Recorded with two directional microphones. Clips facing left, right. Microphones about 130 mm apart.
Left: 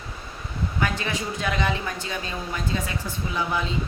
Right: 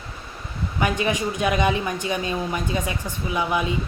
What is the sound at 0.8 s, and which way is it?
Speech, 15° right (ahead or behind).